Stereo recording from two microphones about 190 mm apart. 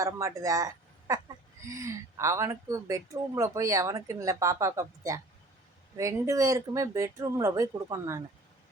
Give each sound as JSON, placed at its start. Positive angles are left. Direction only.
{"t": 0.0, "sound": "speech", "side_deg": -15}